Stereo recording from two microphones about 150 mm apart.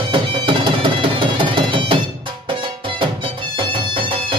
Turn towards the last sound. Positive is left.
turn(degrees=-35)  # may be behind; listen again after turning